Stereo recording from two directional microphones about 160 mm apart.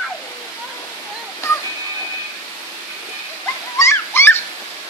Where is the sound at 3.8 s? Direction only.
15° left (ahead or behind).